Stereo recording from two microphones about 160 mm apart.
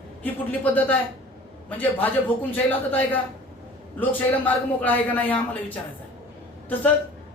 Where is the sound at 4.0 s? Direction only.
10° left (ahead or behind).